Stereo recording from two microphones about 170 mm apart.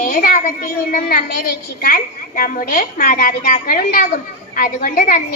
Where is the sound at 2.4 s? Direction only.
55° left (ahead or behind).